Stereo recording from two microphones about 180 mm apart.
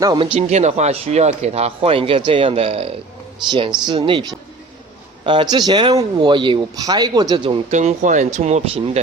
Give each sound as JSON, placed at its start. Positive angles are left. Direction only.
{"t": 0.0, "sound": "speech", "side_deg": -20}
{"t": 0.3, "sound": "speech", "side_deg": -40}
{"t": 7.7, "sound": "speech", "side_deg": -40}